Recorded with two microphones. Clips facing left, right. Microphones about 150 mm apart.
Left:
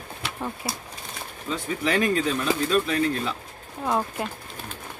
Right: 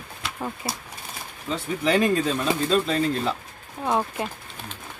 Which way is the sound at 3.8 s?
Centre (ahead or behind).